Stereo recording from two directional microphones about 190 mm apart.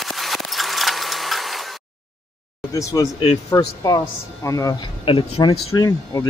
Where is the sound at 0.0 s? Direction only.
Centre (ahead or behind).